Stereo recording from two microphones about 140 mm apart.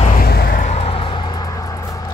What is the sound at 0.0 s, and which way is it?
Vehicle, 75° left (ahead or behind).